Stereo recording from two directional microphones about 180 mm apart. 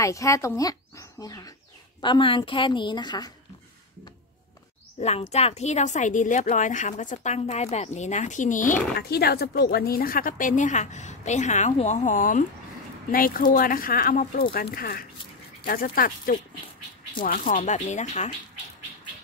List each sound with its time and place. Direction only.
0.0 s a woman's voice: 15° left (ahead or behind)
5.3 s a woman's voice: 35° left (ahead or behind)
9.1 s a woman's voice: 60° left (ahead or behind); by 18.3 s 40° left (ahead or behind)